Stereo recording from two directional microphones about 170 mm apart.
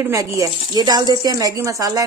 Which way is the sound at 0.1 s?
20° right (ahead or behind).